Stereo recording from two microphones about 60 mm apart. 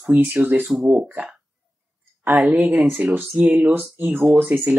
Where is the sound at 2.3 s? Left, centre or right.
Right.